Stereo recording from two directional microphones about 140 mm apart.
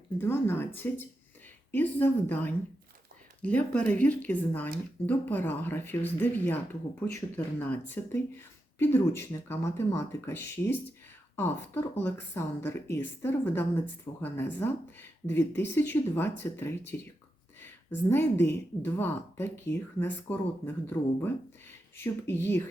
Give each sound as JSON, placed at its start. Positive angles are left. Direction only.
{"t": 0.2, "sound": "a woman's voice", "side_deg": 15}